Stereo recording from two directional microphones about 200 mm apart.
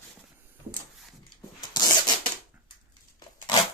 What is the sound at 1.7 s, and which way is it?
Rub, 20° left (ahead or behind).